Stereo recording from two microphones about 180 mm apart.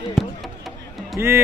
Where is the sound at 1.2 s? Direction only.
15° right (ahead or behind).